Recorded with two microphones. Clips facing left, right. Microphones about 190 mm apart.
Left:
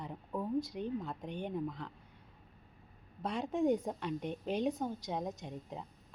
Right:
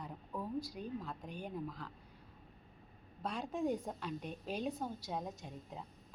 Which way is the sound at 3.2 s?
20° left (ahead or behind).